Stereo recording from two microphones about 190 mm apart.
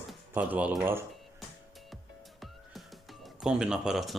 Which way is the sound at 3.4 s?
5° right (ahead or behind).